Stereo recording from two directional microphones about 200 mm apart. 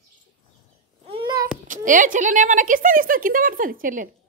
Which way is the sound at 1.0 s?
25° right (ahead or behind).